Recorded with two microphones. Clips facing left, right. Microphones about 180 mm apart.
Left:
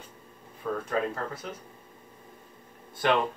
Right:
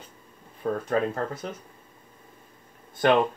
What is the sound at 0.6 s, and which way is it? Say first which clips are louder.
Speech: right 4 dB; 40° right (ahead or behind).